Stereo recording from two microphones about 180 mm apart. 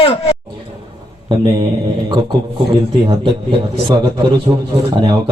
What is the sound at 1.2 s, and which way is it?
Speech, 25° right (ahead or behind).